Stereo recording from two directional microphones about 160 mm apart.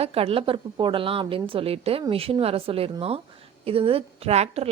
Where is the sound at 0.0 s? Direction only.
40° right (ahead or behind).